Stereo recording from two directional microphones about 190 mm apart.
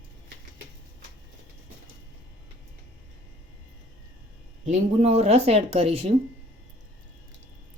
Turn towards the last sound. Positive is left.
turn(degrees=-35)  # may be behind; listen again after turning